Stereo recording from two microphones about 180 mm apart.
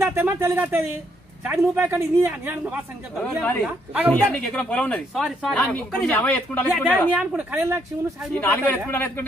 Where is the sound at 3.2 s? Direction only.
5° left (ahead or behind).